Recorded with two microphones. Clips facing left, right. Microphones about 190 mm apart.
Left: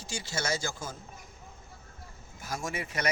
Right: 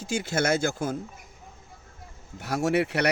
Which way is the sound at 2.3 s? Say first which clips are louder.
Right 12 dB; 70° right (ahead or behind).